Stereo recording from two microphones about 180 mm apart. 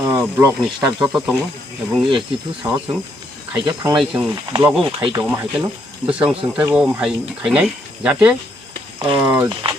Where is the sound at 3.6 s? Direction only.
25° right (ahead or behind).